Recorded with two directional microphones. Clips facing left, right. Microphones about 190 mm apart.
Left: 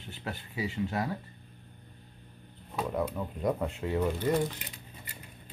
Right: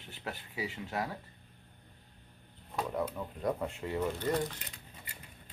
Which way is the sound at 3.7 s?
20° left (ahead or behind).